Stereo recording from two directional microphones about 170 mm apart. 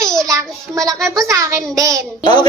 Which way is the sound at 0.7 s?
20° right (ahead or behind).